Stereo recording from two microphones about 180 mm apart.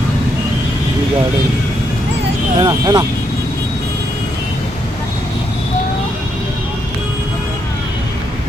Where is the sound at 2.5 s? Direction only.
20° right (ahead or behind).